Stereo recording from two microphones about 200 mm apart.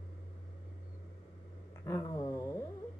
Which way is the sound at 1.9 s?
15° left (ahead or behind).